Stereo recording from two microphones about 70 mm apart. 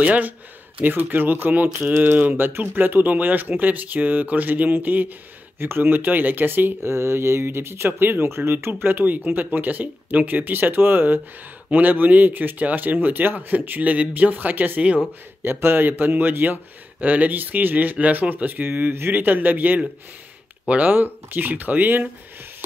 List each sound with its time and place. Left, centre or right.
0.0 s speech: centre